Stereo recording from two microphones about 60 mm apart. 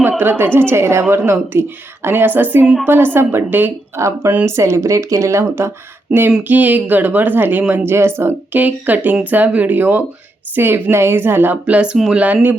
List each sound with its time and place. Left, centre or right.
0.2 s speech: right
3.9 s speech: right
6.1 s a sound: centre
6.5 s speech: right
8.5 s speech: right
11.6 s speech: centre